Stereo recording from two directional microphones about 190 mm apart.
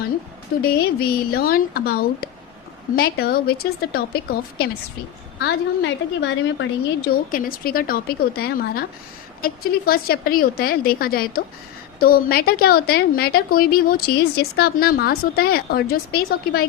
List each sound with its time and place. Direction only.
0.6 s a woman's voice: 55° left (ahead or behind)
5.4 s a woman's voice: 70° left (ahead or behind)
7.1 s a woman's voice: 50° left (ahead or behind)